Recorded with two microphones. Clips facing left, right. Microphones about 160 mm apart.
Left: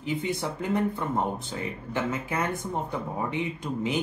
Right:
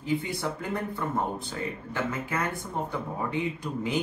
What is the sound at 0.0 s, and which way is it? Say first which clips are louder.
Speech: even; 20° left (ahead or behind).